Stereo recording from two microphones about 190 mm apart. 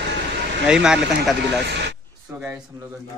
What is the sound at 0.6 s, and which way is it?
Speech, 5° right (ahead or behind).